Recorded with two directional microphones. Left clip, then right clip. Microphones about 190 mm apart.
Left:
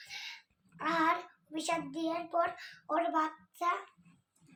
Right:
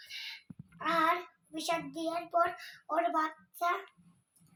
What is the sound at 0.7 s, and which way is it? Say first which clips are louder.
Child singing: right 1 dB; centre (ahead or behind).